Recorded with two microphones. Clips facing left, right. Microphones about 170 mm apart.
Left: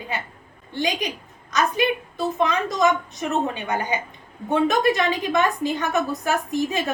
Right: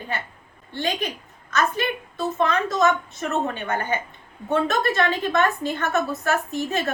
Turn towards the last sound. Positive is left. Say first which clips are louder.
# left 2 dB
turn(degrees=15)  # may be behind; listen again after turning